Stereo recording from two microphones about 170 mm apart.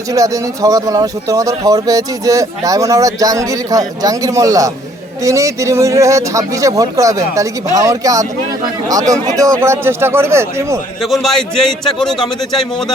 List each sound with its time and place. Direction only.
0.1 s speech: 20° right (ahead or behind)
11.0 s a man's voice: centre (ahead or behind)